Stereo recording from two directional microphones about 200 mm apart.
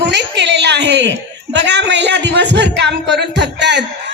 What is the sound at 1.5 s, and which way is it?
Speech, 60° right (ahead or behind).